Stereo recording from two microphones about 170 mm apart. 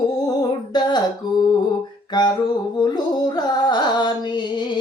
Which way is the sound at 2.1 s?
25° left (ahead or behind).